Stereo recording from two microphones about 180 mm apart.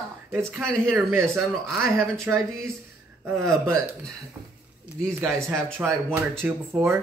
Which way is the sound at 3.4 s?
15° right (ahead or behind).